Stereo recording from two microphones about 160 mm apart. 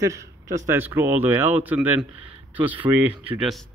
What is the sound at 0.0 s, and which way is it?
Speech, 20° right (ahead or behind).